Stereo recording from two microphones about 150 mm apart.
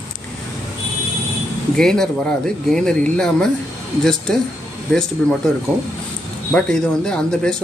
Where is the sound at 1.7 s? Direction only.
5° left (ahead or behind).